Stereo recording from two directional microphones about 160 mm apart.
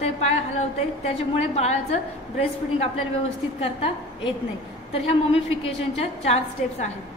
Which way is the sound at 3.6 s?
35° left (ahead or behind).